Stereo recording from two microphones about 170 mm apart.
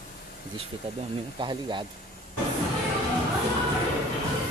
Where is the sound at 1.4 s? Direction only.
25° right (ahead or behind).